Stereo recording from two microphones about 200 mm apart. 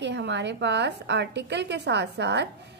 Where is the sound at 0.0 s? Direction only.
60° right (ahead or behind).